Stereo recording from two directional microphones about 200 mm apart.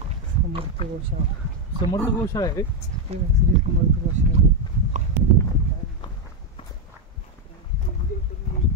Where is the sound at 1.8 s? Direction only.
20° left (ahead or behind).